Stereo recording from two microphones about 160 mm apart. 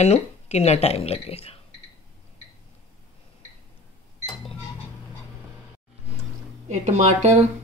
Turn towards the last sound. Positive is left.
turn(degrees=-45)  # may be behind; listen again after turning